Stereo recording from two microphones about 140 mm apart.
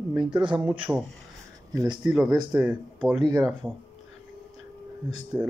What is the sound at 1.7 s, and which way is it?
Speech, 20° right (ahead or behind).